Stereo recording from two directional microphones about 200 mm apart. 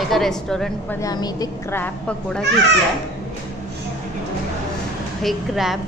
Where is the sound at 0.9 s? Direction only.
20° left (ahead or behind).